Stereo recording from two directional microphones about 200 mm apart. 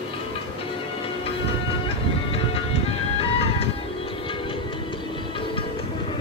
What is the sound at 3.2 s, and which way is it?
Music, 30° left (ahead or behind).